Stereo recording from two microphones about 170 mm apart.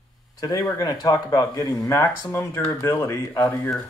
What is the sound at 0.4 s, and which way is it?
Speech, 20° left (ahead or behind).